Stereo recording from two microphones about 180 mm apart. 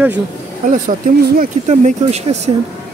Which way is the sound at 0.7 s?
50° right (ahead or behind).